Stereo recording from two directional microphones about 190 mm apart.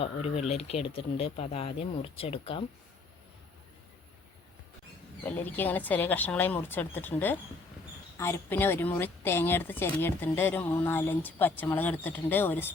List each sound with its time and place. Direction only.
0.0 s speech: 35° left (ahead or behind)
5.2 s speech: 10° left (ahead or behind)